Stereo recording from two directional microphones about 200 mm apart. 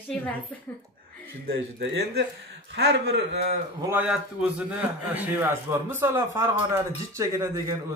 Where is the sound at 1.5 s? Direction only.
60° right (ahead or behind).